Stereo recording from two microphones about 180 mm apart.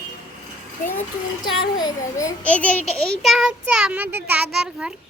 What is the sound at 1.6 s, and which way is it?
Speech, 20° left (ahead or behind).